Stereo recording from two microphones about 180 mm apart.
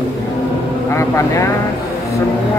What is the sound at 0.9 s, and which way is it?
Speech, 15° left (ahead or behind).